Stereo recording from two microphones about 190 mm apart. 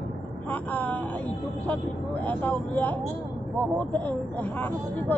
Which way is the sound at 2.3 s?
10° left (ahead or behind).